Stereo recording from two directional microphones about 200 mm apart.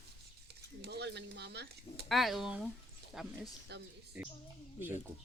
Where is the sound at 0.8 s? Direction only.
55° right (ahead or behind).